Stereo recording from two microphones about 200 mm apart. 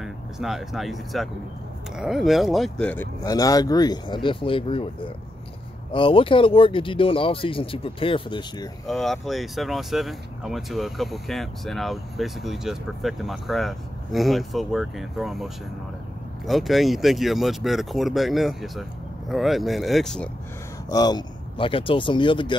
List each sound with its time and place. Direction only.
0.0 s speech: centre (ahead or behind)
3.2 s speech: 20° left (ahead or behind)
8.8 s speech: centre (ahead or behind)
20.9 s speech: 20° left (ahead or behind)